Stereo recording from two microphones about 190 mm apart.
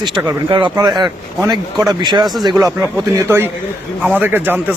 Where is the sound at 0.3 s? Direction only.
25° right (ahead or behind).